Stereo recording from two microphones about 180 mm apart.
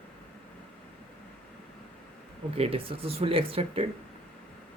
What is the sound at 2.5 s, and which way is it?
Speech, 30° right (ahead or behind).